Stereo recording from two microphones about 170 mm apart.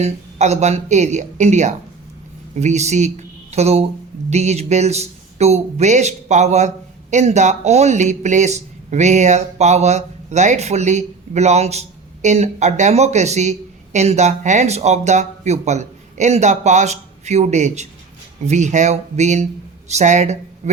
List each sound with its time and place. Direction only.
0.0 s speech: 40° right (ahead or behind)